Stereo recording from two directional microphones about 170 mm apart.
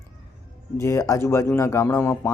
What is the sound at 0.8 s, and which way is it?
Speech, 15° left (ahead or behind).